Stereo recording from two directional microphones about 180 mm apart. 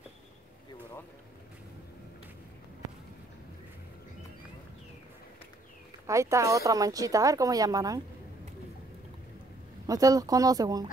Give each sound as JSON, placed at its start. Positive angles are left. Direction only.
{"t": 6.0, "sound": "speech", "side_deg": -15}
{"t": 9.8, "sound": "speech", "side_deg": -20}